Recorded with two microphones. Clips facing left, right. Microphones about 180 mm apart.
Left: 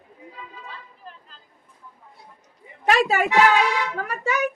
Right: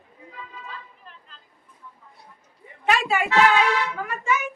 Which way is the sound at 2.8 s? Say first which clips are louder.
Left 3 dB; 40° left (ahead or behind).